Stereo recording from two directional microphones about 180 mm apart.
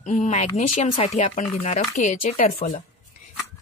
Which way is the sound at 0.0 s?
40° left (ahead or behind).